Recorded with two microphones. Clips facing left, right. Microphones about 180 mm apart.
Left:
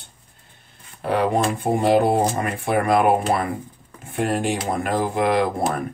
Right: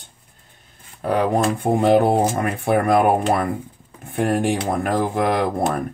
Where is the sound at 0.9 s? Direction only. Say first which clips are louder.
Right 1 dB; 45° right (ahead or behind).